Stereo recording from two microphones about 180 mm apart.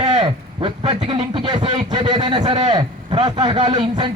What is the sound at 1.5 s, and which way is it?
A man's voice, 25° right (ahead or behind).